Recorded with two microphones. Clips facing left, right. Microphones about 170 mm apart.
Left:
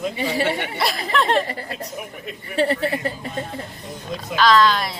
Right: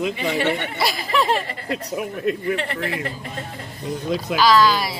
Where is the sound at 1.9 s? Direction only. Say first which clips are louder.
Right 10 dB; 90° right.